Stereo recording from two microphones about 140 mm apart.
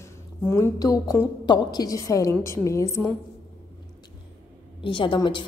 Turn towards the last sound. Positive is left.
turn(degrees=35)  # may be behind; listen again after turning